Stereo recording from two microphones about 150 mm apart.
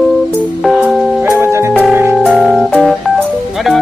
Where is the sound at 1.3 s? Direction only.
20° right (ahead or behind).